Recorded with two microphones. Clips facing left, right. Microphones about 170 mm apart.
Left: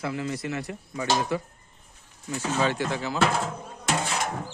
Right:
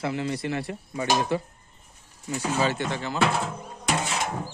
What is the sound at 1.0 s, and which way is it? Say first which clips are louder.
Speech: right 1 dB; 15° right (ahead or behind).